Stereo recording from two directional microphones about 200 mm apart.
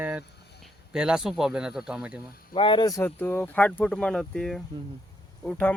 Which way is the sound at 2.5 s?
25° left (ahead or behind).